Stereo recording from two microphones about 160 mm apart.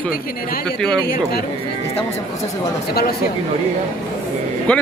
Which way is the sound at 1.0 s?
75° left (ahead or behind).